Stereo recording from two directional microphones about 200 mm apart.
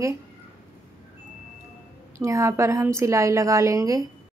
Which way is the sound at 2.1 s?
15° right (ahead or behind).